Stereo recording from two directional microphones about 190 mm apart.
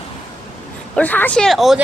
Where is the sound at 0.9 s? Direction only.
10° left (ahead or behind).